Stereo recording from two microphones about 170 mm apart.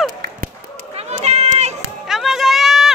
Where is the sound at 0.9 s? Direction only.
40° right (ahead or behind).